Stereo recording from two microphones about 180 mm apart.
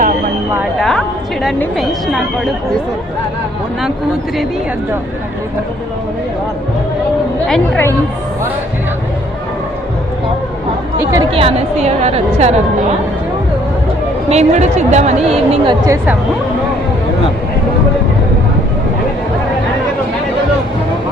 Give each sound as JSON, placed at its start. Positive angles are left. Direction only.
{"t": 0.6, "sound": "a woman's voice", "side_deg": 0}
{"t": 7.4, "sound": "a woman's voice", "side_deg": 0}
{"t": 11.0, "sound": "speech", "side_deg": -15}
{"t": 11.3, "sound": "speech", "side_deg": -30}
{"t": 14.3, "sound": "speech", "side_deg": -40}